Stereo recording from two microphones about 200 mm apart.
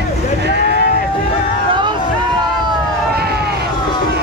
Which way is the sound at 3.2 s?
50° right (ahead or behind).